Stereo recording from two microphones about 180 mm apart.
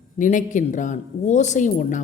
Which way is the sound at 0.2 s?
45° left (ahead or behind).